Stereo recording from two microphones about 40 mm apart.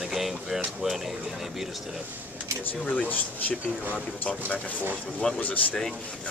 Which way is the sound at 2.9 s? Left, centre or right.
Left.